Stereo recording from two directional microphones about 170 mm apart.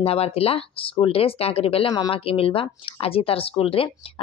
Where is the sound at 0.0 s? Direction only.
35° left (ahead or behind).